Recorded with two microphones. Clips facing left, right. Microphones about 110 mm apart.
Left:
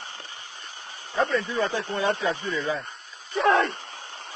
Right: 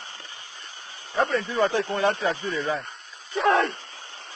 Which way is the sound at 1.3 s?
35° right (ahead or behind).